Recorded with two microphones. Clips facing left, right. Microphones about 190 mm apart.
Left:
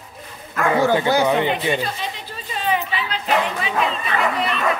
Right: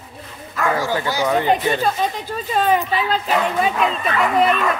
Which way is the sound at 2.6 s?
45° right (ahead or behind).